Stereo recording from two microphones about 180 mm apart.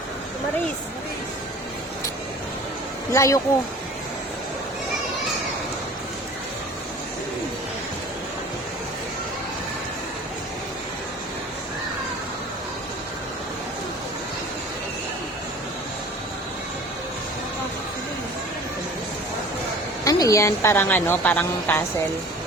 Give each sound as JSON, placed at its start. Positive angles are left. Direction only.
{"t": 3.1, "sound": "a woman's voice", "side_deg": 15}
{"t": 20.1, "sound": "a woman's voice", "side_deg": 20}